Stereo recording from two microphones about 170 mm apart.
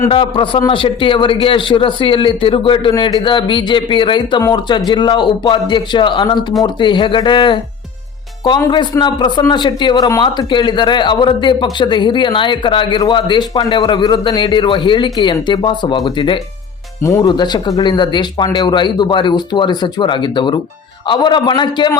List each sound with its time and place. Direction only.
0.1 s a man's voice: 30° left (ahead or behind)
17.0 s a man's voice: 15° left (ahead or behind)